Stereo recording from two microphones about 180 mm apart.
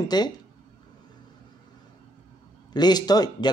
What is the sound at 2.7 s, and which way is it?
Speech, 25° left (ahead or behind).